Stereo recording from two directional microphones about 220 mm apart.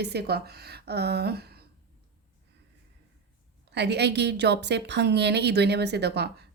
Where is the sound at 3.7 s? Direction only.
50° right (ahead or behind).